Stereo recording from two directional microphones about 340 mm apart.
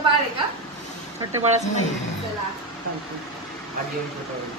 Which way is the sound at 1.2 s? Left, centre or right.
Centre.